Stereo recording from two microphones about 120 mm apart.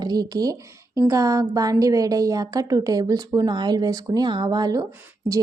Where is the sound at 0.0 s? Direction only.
35° right (ahead or behind).